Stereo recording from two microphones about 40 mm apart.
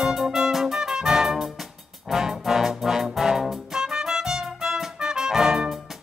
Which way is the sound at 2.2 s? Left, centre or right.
Centre.